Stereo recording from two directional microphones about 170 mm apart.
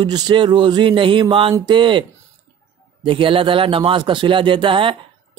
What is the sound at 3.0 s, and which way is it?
A man's voice, 30° right (ahead or behind).